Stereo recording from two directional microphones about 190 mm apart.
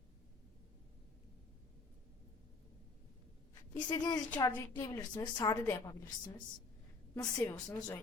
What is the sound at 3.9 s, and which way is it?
A woman's voice, 20° left (ahead or behind).